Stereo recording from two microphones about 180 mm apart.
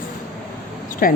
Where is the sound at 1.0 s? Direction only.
50° left (ahead or behind).